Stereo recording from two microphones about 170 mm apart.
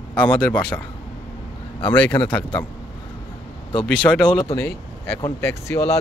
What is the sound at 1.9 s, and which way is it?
Speech, 10° left (ahead or behind).